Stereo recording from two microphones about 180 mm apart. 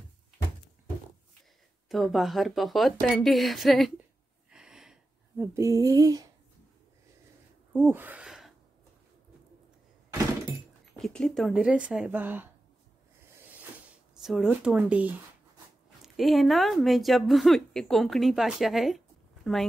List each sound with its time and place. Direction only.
1.9 s speech: centre (ahead or behind)
4.5 s a sound: 5° right (ahead or behind)
5.4 s a sound: 15° right (ahead or behind)
7.7 s gasp: 10° right (ahead or behind)
11.0 s speech: centre (ahead or behind)
14.1 s speech: centre (ahead or behind)